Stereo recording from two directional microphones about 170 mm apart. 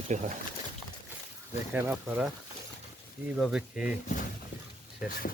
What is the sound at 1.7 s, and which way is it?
Speech, 10° right (ahead or behind).